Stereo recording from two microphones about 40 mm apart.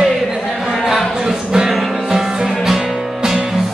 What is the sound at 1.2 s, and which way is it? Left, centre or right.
Music, centre.